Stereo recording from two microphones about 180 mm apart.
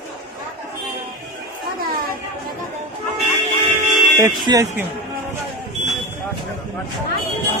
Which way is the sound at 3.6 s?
45° right (ahead or behind).